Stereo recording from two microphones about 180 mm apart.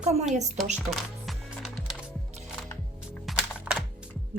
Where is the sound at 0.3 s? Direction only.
40° right (ahead or behind).